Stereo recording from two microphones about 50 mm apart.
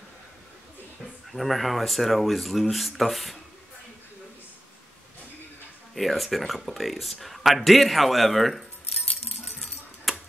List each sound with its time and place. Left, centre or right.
1.3 s speech: centre
5.9 s speech: centre
9.1 s keys jangling: centre